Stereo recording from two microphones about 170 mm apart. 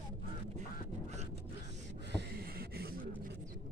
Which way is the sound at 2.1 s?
75° right (ahead or behind).